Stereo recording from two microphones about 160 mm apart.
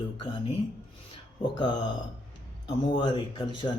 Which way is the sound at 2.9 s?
30° left (ahead or behind).